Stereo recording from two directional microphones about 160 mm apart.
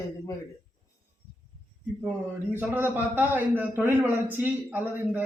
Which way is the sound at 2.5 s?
10° right (ahead or behind).